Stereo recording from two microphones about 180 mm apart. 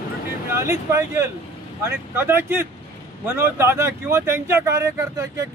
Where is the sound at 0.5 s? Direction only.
15° right (ahead or behind).